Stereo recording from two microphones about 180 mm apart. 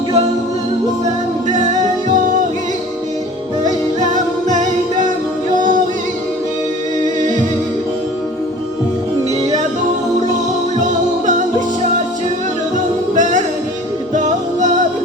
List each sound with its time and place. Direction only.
4.4 s music: 45° right (ahead or behind)
11.3 s music: 45° right (ahead or behind)